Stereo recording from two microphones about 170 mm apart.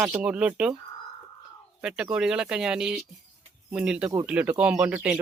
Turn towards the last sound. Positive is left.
turn(degrees=-5)  # may be behind; listen again after turning